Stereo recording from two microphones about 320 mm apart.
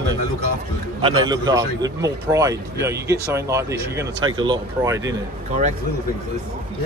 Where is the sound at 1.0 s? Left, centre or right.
Centre.